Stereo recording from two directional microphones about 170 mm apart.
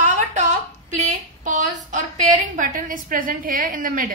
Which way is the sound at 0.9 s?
45° right (ahead or behind).